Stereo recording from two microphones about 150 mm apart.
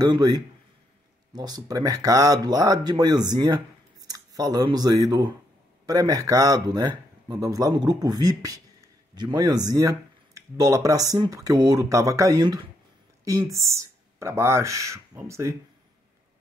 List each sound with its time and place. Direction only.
0.0 s speech: 25° right (ahead or behind)